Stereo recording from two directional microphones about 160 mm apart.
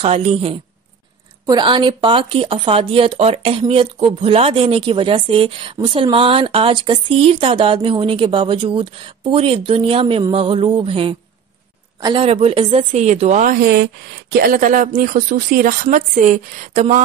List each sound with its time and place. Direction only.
0.0 s speech: 40° right (ahead or behind)
1.4 s speech: 25° right (ahead or behind)
12.3 s a woman's voice: 40° right (ahead or behind); by 13.8 s 75° right (ahead or behind)
14.3 s speech: 60° right (ahead or behind)